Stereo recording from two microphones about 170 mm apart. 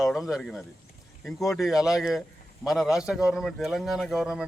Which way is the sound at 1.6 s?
Centre (ahead or behind).